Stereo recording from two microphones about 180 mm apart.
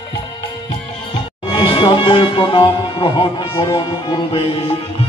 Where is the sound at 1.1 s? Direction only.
30° left (ahead or behind).